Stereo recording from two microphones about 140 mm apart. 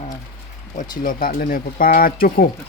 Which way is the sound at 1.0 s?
85° left.